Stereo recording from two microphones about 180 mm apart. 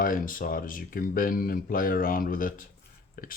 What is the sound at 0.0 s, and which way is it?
Speech, 50° left (ahead or behind).